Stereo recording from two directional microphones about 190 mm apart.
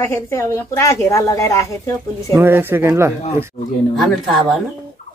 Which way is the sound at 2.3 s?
10° right (ahead or behind).